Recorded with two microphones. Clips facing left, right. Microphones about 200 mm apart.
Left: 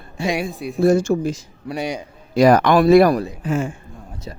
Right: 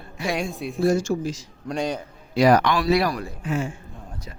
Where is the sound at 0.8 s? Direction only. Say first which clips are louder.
Left 5 dB; 60° left (ahead or behind).